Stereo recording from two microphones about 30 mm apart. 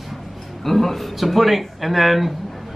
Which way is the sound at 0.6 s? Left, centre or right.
Centre.